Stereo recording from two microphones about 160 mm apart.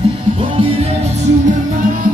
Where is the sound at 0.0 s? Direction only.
35° right (ahead or behind).